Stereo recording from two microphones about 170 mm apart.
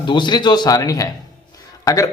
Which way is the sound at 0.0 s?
25° left (ahead or behind).